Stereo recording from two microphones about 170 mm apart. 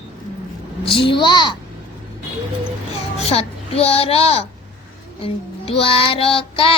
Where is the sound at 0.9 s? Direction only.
30° left (ahead or behind).